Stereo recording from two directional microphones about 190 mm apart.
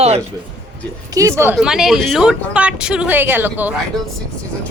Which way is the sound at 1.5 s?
5° right (ahead or behind).